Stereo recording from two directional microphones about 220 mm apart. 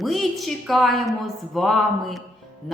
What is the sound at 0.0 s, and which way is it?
A woman's voice, centre (ahead or behind).